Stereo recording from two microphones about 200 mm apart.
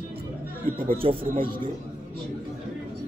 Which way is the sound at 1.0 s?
30° right (ahead or behind).